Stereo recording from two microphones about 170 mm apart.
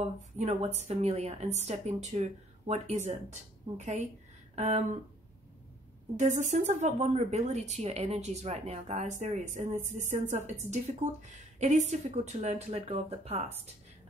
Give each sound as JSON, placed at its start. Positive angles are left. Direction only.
{"t": 0.0, "sound": "a woman's voice", "side_deg": -40}
{"t": 6.1, "sound": "a woman's voice", "side_deg": -45}